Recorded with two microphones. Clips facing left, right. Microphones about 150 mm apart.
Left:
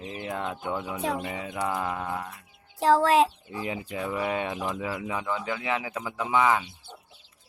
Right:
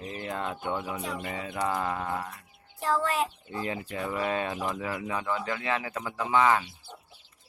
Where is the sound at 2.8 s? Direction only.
90° left.